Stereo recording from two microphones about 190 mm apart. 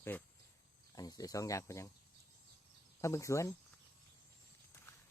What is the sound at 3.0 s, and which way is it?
Speech, 15° left (ahead or behind).